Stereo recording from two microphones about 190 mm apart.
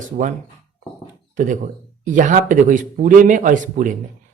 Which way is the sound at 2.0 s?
40° right (ahead or behind).